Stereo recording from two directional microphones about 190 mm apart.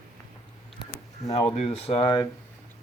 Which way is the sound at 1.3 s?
35° left (ahead or behind).